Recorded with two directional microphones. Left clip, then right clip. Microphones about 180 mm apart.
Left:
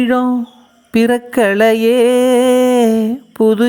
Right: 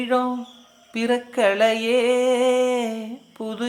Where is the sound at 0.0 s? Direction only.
45° left (ahead or behind).